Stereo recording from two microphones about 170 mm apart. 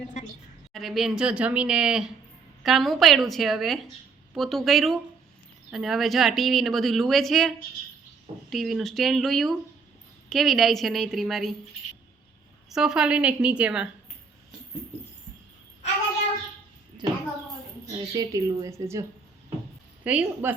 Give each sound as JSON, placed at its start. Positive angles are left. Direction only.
{"t": 0.7, "sound": "speech", "side_deg": 0}
{"t": 12.7, "sound": "speech", "side_deg": -5}
{"t": 17.0, "sound": "a woman's voice", "side_deg": -25}
{"t": 20.1, "sound": "a woman's voice", "side_deg": -10}